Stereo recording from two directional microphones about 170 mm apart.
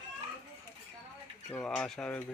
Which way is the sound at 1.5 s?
5° left (ahead or behind).